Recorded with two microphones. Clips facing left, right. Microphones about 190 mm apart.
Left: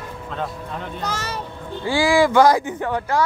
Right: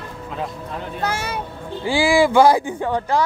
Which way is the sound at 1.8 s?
15° right (ahead or behind).